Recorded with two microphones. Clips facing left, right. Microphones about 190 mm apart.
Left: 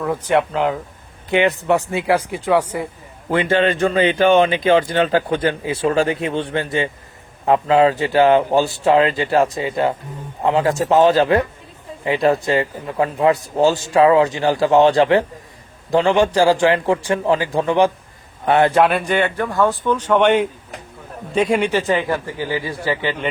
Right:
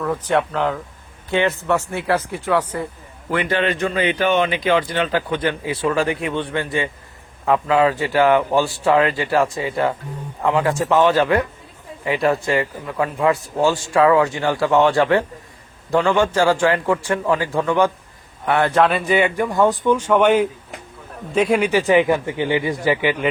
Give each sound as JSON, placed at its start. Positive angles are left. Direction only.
{"t": 0.0, "sound": "speech", "side_deg": 10}
{"t": 3.2, "sound": "speech", "side_deg": 25}
{"t": 4.9, "sound": "speech", "side_deg": 40}
{"t": 6.0, "sound": "speech", "side_deg": 25}
{"t": 12.5, "sound": "speech", "side_deg": 25}
{"t": 18.4, "sound": "a man's voice", "side_deg": 20}
{"t": 21.7, "sound": "speech", "side_deg": -15}